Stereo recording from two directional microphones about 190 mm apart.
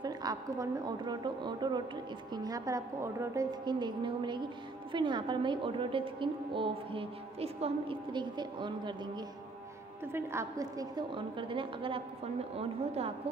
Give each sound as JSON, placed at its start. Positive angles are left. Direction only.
{"t": 0.0, "sound": "a woman's voice", "side_deg": -20}
{"t": 10.1, "sound": "a woman's voice", "side_deg": -15}